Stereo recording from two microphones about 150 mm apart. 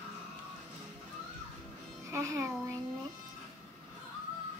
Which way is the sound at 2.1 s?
20° right (ahead or behind).